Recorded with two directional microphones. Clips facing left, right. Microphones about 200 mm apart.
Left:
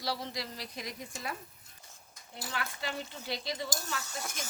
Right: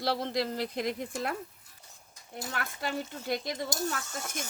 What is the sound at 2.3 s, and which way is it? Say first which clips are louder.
Speech: right 2 dB; 45° right (ahead or behind).